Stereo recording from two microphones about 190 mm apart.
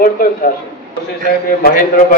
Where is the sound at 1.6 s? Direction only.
50° left (ahead or behind).